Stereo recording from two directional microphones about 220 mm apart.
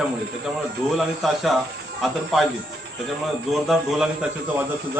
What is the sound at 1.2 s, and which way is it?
Speech, centre (ahead or behind).